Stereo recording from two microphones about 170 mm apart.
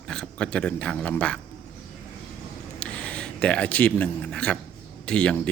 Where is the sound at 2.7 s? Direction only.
5° left (ahead or behind).